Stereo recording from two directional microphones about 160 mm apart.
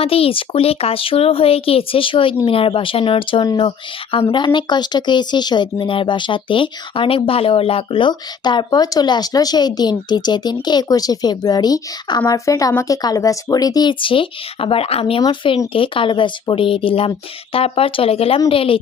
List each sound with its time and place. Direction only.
0.0 s speech: 35° left (ahead or behind)